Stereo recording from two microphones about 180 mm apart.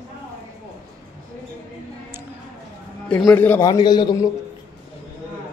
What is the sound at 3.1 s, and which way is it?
Speech, 10° left (ahead or behind).